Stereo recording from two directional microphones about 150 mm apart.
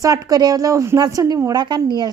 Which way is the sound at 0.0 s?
25° right (ahead or behind).